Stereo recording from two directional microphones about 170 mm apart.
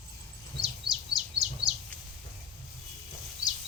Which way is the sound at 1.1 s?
5° right (ahead or behind).